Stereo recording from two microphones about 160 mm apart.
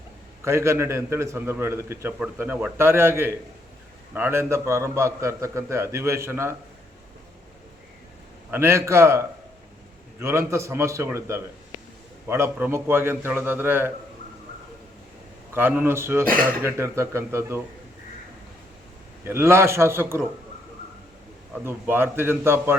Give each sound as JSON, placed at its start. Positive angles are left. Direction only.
{"t": 0.4, "sound": "a man's voice", "side_deg": -15}
{"t": 8.4, "sound": "a man's voice", "side_deg": -15}
{"t": 15.5, "sound": "a man's voice", "side_deg": -10}
{"t": 19.2, "sound": "a man's voice", "side_deg": -15}
{"t": 21.6, "sound": "a man's voice", "side_deg": -15}